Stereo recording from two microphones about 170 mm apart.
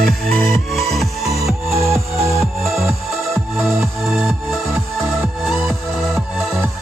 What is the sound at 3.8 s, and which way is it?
Music, centre (ahead or behind).